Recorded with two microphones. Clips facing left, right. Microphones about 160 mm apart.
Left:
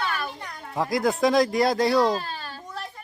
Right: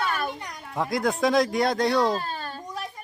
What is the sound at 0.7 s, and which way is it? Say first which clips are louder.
Speech: left 2 dB; centre (ahead or behind).